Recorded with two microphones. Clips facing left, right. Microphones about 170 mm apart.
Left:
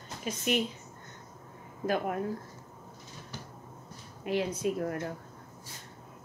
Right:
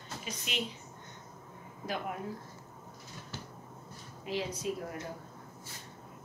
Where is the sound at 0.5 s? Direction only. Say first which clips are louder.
Left 10 dB; 50° left (ahead or behind).